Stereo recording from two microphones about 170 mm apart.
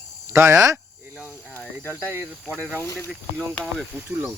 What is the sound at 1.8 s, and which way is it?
Speech, 15° right (ahead or behind).